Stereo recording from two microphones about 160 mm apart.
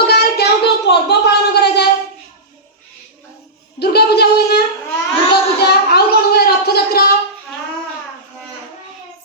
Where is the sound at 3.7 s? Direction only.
90° left.